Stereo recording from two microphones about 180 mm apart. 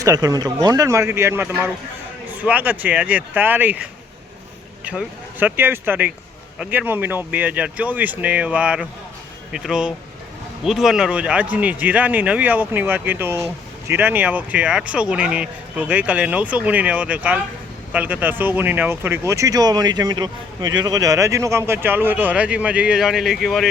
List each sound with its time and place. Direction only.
0.0 s speech: 20° right (ahead or behind)
4.9 s speech: 10° right (ahead or behind)